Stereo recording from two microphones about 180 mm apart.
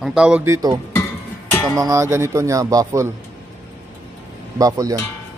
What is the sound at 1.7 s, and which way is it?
Speech, 15° right (ahead or behind).